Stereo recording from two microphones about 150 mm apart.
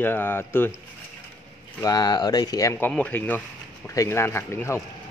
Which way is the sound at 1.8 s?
25° left (ahead or behind).